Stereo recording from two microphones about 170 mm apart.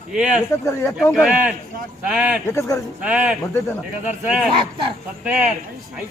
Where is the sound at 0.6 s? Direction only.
15° left (ahead or behind).